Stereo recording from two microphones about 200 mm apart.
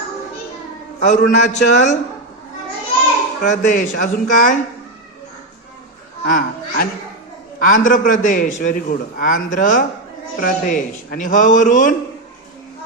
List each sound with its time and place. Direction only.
0.9 s a man's voice: 35° left (ahead or behind)
3.4 s a man's voice: 40° left (ahead or behind)
6.2 s a man's voice: 40° left (ahead or behind)